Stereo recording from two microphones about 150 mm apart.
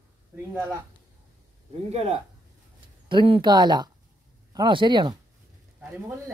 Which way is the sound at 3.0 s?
35° right (ahead or behind).